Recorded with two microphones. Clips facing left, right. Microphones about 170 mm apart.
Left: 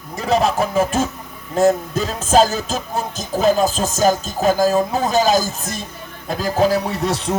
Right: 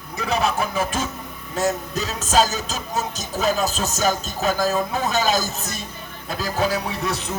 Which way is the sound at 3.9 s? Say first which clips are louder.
Left 6 dB; 45° left (ahead or behind).